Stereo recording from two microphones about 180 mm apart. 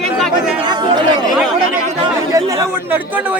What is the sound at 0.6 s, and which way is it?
Speech, 25° right (ahead or behind).